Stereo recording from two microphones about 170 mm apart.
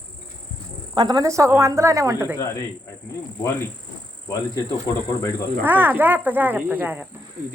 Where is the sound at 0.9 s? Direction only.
25° right (ahead or behind).